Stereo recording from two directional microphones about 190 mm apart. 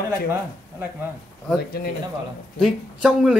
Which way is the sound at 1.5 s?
55° left (ahead or behind).